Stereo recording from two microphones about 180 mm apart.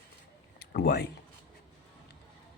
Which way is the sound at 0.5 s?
60° left (ahead or behind).